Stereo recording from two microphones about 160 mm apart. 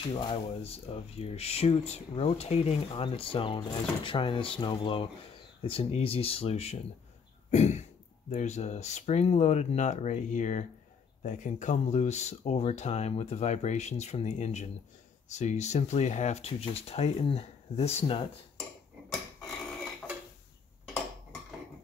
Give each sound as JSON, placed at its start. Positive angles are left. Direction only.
{"t": 0.2, "sound": "speech", "side_deg": 35}